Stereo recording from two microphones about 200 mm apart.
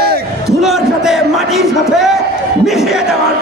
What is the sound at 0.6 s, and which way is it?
Speech, centre (ahead or behind).